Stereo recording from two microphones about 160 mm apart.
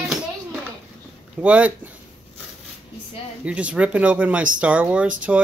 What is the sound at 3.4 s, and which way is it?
Speech, 10° right (ahead or behind).